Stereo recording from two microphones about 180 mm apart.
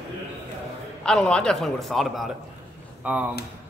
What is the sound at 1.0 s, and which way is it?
A man's voice, 5° left (ahead or behind).